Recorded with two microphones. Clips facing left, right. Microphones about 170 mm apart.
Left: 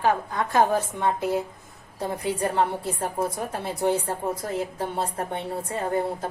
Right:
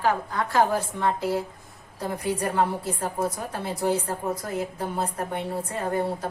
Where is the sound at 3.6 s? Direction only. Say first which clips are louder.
Left 1 dB; 25° left (ahead or behind).